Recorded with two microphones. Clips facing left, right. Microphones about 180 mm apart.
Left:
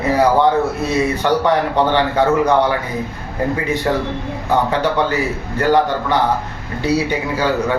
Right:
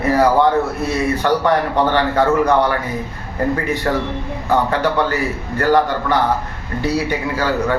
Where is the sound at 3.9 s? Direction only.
10° left (ahead or behind).